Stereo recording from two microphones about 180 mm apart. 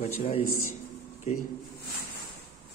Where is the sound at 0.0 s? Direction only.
35° left (ahead or behind).